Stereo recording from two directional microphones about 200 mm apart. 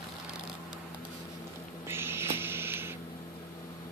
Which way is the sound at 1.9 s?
10° right (ahead or behind).